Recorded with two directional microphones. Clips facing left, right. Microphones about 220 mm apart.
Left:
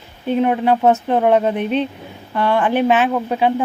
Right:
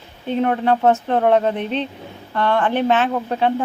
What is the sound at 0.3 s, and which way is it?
A woman's voice, 10° left (ahead or behind).